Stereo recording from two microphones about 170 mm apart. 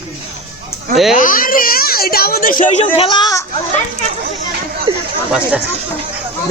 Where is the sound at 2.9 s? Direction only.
30° left (ahead or behind).